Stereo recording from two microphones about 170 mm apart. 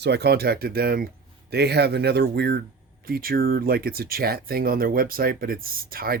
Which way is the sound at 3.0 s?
60° right (ahead or behind).